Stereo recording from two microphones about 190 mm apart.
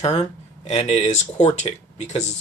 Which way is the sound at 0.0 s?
35° left (ahead or behind).